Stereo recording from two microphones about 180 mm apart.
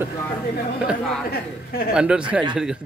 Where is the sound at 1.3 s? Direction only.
60° left (ahead or behind).